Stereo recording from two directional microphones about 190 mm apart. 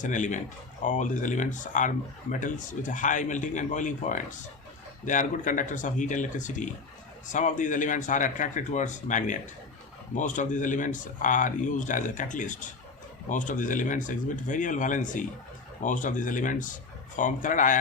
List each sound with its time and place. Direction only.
0.0 s speech: 40° left (ahead or behind)